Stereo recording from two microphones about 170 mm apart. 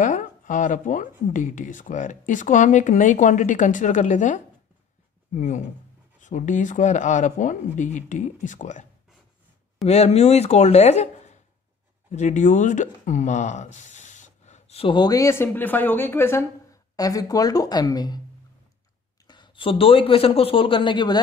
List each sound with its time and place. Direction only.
0.0 s speech: 50° left (ahead or behind)
9.8 s a man's voice: 40° left (ahead or behind); by 18.2 s 25° left (ahead or behind)
19.2 s a man's voice: 25° left (ahead or behind)